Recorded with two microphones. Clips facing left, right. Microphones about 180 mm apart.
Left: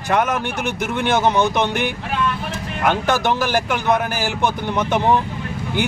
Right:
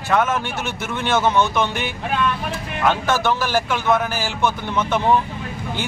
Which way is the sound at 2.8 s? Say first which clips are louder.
Left 1 dB; 15° left (ahead or behind).